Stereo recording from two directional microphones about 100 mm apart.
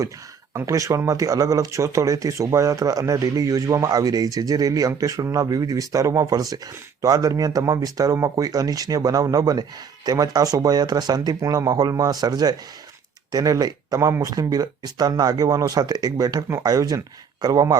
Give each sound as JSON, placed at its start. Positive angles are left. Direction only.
{"t": 0.5, "sound": "speech", "side_deg": -30}